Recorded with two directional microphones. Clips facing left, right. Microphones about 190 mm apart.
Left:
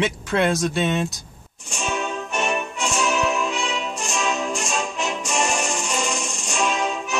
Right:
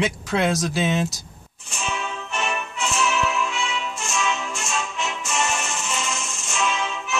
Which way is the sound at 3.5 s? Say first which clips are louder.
Left 2 dB; 35° left (ahead or behind).